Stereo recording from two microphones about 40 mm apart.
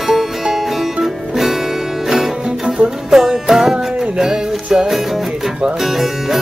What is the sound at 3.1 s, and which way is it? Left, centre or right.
Music, centre.